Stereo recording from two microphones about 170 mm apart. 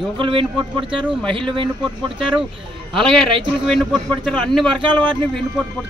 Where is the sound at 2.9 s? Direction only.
5° left (ahead or behind).